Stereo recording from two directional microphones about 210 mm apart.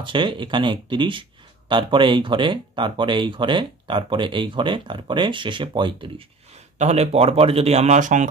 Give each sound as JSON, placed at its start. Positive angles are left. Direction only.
{"t": 0.0, "sound": "speech", "side_deg": -25}